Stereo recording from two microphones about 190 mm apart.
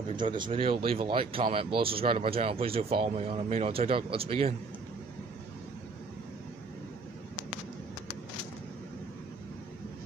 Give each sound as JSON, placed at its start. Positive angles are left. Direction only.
{"t": 0.1, "sound": "speech", "side_deg": -25}